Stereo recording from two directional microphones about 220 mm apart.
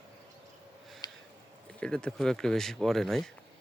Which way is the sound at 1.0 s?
15° left (ahead or behind).